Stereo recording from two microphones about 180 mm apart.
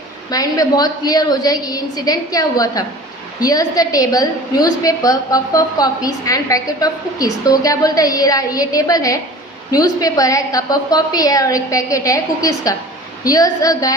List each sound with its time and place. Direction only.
0.3 s a woman's voice: 20° left (ahead or behind)